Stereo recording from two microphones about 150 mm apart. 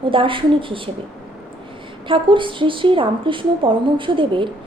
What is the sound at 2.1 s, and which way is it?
A woman's voice, 35° right (ahead or behind).